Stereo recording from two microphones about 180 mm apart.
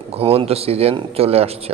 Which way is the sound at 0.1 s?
30° right (ahead or behind).